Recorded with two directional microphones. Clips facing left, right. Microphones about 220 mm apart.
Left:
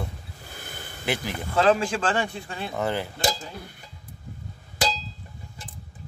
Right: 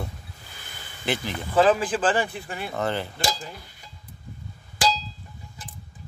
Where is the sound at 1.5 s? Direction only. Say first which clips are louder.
Right 1 dB; 5° right (ahead or behind).